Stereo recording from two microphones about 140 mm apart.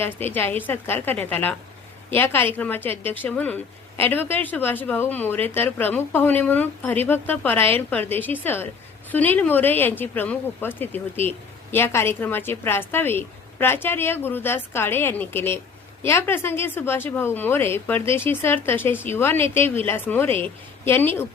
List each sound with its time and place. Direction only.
0.0 s a woman's voice: 15° left (ahead or behind)